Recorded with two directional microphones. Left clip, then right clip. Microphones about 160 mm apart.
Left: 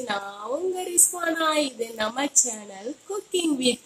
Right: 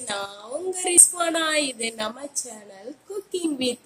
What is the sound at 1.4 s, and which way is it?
Speech, 25° left (ahead or behind).